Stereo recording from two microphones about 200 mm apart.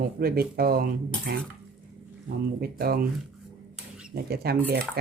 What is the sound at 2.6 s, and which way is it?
Speech, 50° right (ahead or behind).